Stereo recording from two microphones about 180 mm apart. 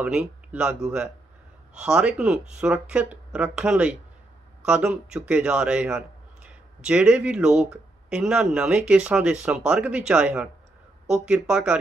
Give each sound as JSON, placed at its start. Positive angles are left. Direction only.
{"t": 0.0, "sound": "a man's voice", "side_deg": -10}